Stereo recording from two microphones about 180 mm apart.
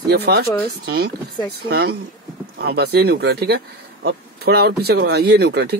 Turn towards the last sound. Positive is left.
turn(degrees=-65)  # may be behind; listen again after turning